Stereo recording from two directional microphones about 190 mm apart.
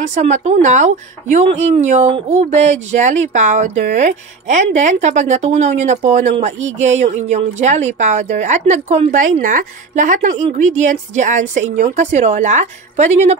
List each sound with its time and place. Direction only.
0.0 s a woman's voice: 40° right (ahead or behind)